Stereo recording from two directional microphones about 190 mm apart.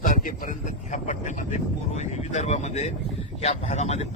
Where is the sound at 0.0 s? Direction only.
45° left (ahead or behind).